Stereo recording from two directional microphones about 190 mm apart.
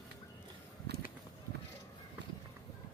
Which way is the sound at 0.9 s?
60° right (ahead or behind).